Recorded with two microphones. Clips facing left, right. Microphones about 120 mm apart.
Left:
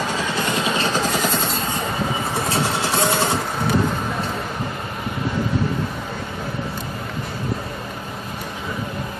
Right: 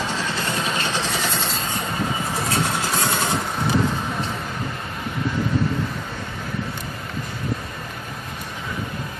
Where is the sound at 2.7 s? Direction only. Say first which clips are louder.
Left 3 dB; 25° left (ahead or behind).